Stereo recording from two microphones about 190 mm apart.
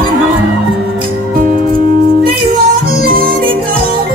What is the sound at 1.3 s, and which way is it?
Music, 50° right (ahead or behind).